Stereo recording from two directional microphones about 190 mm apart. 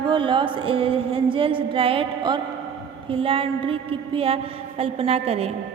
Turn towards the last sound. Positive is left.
turn(degrees=-30)  # may be behind; listen again after turning